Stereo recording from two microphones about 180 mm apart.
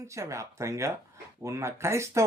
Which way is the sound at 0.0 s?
15° right (ahead or behind).